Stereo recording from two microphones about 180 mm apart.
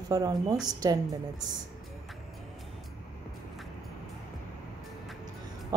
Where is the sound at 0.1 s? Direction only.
20° right (ahead or behind).